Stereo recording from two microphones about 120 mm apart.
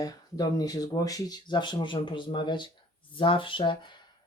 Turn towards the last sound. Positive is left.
turn(degrees=40)  # may be behind; listen again after turning